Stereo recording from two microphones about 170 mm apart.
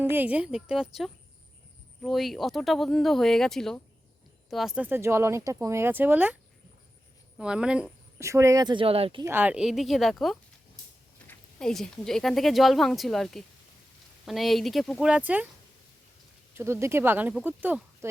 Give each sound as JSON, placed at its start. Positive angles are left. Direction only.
{"t": 0.0, "sound": "speech", "side_deg": -10}
{"t": 7.3, "sound": "speech", "side_deg": -5}
{"t": 8.2, "sound": "speech", "side_deg": -15}
{"t": 9.2, "sound": "speech", "side_deg": -10}
{"t": 16.6, "sound": "speech", "side_deg": -15}